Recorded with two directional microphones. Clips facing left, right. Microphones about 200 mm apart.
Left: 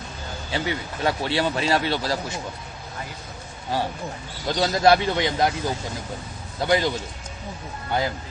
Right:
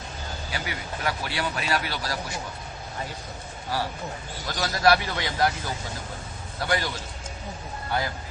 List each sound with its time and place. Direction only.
0.5 s a man's voice: 25° left (ahead or behind)
3.7 s a man's voice: 20° left (ahead or behind)
6.6 s a man's voice: 20° left (ahead or behind)